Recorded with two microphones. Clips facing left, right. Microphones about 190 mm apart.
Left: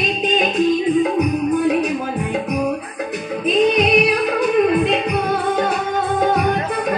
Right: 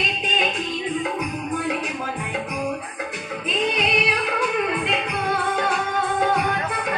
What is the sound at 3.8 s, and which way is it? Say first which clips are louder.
Music: left 8 dB; 40° left (ahead or behind).